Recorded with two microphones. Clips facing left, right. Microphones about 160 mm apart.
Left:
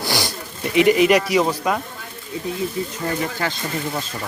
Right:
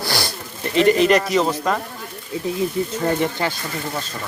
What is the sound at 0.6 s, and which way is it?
Speech, 10° left (ahead or behind).